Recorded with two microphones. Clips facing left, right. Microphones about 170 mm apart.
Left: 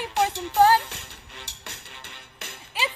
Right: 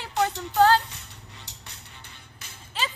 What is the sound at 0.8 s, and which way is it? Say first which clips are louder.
Music: left 3 dB; 70° left (ahead or behind).